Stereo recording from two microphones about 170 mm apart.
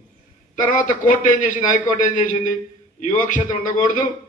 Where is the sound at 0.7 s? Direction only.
50° left (ahead or behind).